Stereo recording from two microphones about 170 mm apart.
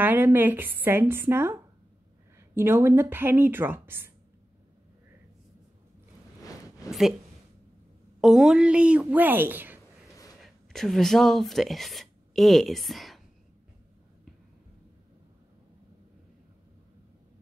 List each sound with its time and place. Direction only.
0.0 s speech: 10° right (ahead or behind)
6.4 s a sound: 20° left (ahead or behind)
6.9 s a woman's voice: centre (ahead or behind)
8.2 s speech: centre (ahead or behind)
10.4 s speech: centre (ahead or behind)